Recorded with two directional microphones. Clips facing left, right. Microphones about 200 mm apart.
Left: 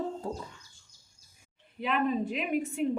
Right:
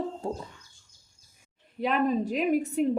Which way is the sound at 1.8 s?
40° right (ahead or behind).